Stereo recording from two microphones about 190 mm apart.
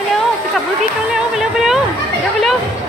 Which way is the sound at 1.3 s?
Centre (ahead or behind).